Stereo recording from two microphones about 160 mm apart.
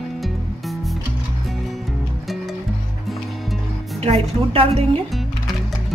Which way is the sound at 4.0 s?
40° right (ahead or behind).